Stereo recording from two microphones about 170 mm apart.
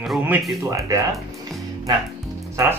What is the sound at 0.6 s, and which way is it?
Speech, 20° right (ahead or behind).